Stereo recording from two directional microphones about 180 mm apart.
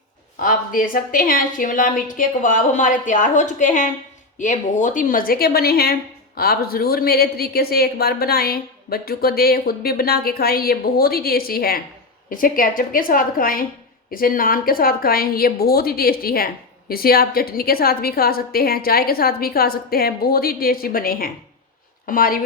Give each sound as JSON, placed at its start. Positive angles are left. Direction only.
{"t": 0.3, "sound": "a woman's voice", "side_deg": 50}